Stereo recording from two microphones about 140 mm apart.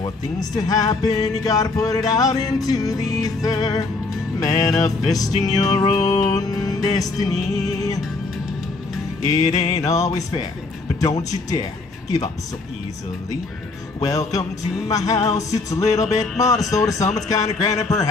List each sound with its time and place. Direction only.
0.0 s speech: 25° left (ahead or behind)
9.3 s speech: 25° left (ahead or behind)
14.0 s speech: 25° left (ahead or behind)